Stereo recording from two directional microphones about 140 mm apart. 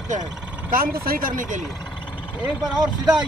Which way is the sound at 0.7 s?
90° right.